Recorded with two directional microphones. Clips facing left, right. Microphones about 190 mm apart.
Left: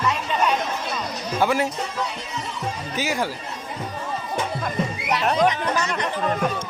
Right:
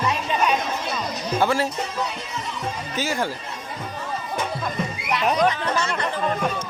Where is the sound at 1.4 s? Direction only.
15° left (ahead or behind).